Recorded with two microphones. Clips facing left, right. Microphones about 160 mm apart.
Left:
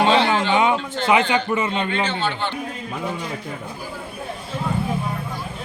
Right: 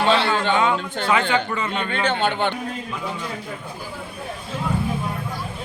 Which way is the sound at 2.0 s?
55° right (ahead or behind).